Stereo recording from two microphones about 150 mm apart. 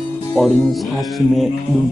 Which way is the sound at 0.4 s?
Centre (ahead or behind).